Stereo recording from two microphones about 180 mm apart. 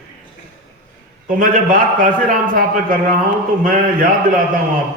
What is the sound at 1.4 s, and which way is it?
A man's voice, 45° right (ahead or behind).